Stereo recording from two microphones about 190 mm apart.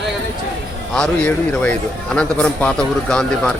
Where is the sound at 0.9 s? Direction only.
5° left (ahead or behind).